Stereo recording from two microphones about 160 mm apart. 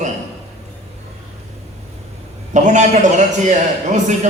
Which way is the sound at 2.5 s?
50° right (ahead or behind).